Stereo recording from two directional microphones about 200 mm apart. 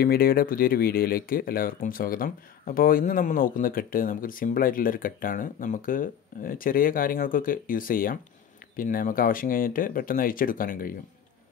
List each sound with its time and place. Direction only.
0.0 s speech: 50° left (ahead or behind)